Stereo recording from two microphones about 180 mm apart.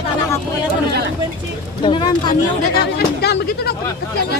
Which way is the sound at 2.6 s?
60° left (ahead or behind).